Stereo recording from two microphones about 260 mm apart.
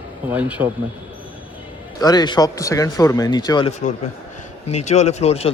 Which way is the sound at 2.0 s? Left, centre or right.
Centre.